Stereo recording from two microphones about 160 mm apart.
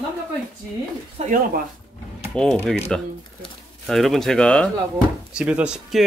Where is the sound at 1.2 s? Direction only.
40° right (ahead or behind).